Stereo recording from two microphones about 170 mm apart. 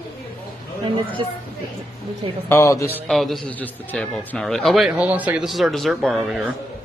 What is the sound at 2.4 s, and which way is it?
Speech, 15° left (ahead or behind).